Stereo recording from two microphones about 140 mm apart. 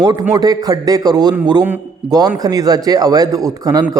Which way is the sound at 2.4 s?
25° right (ahead or behind).